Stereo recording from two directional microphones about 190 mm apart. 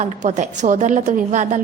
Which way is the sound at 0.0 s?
40° right (ahead or behind).